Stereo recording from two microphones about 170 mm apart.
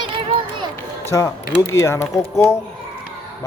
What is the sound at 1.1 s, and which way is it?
Speech, 20° left (ahead or behind).